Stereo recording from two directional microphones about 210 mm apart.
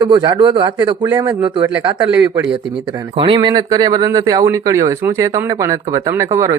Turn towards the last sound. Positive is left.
turn(degrees=-10)  # may be behind; listen again after turning